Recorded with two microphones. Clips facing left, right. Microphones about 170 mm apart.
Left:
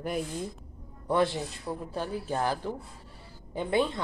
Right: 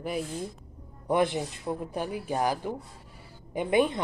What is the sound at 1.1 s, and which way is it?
A woman's voice, 20° right (ahead or behind).